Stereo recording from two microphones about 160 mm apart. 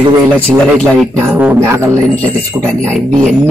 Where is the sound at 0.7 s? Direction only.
5° left (ahead or behind).